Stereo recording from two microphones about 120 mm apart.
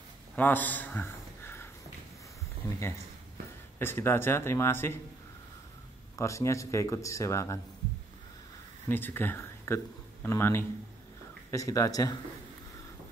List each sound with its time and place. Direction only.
0.4 s a sound: 15° left (ahead or behind)
3.8 s speech: 20° left (ahead or behind)
6.1 s speech: 25° left (ahead or behind)
8.8 s speech: 15° left (ahead or behind)